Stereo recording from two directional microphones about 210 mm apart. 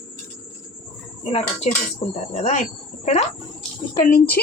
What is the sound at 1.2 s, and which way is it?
Speech, 30° left (ahead or behind).